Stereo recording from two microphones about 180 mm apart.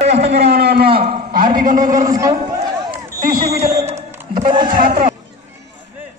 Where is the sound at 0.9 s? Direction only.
55° right (ahead or behind).